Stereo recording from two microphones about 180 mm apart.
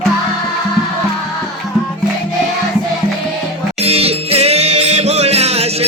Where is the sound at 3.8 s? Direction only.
35° right (ahead or behind).